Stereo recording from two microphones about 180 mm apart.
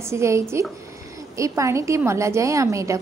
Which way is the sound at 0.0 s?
15° right (ahead or behind).